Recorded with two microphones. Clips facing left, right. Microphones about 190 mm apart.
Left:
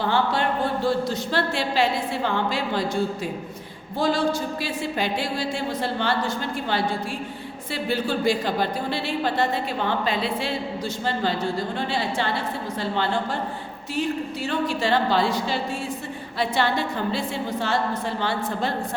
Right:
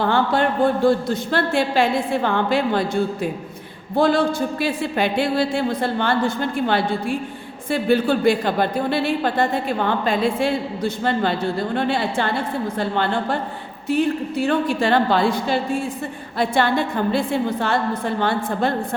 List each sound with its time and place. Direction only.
0.0 s a man's voice: 55° right (ahead or behind)